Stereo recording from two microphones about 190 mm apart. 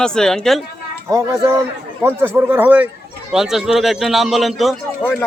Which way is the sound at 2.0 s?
10° right (ahead or behind).